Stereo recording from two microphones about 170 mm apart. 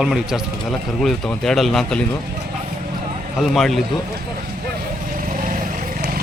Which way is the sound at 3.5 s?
Centre (ahead or behind).